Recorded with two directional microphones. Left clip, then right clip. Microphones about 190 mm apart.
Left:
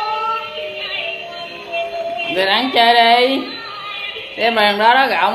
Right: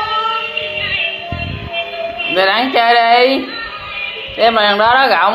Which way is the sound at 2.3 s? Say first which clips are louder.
Right 3 dB; 10° left (ahead or behind).